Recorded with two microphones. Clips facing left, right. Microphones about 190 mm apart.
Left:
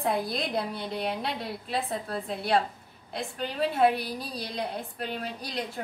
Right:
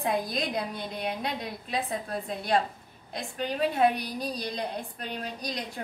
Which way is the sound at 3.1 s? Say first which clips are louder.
Right 1 dB; 15° right (ahead or behind).